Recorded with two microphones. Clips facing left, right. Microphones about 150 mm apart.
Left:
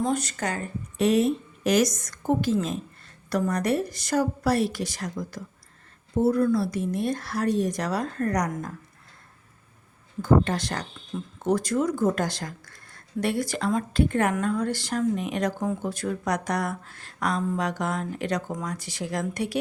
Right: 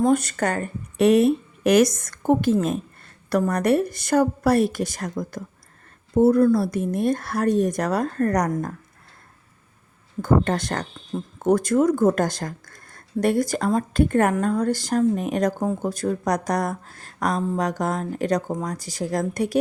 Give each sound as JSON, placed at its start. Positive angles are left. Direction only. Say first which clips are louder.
{"t": 0.0, "sound": "a woman's voice", "louder": "right 7 dB", "side_deg": -55}
{"t": 10.2, "sound": "a woman's voice", "louder": "right 1 dB", "side_deg": -50}